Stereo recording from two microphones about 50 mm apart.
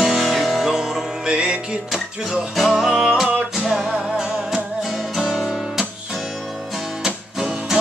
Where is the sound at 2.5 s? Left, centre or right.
Centre.